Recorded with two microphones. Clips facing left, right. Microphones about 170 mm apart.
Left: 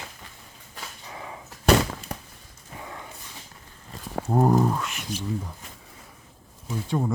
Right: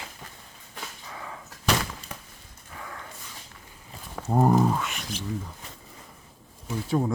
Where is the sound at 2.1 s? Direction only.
40° left (ahead or behind).